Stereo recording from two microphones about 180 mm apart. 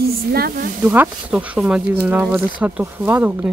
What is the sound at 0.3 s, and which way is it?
Speech, 55° right (ahead or behind).